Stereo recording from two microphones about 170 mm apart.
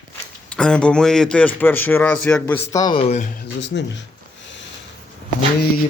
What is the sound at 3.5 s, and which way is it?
Speech, 90° left.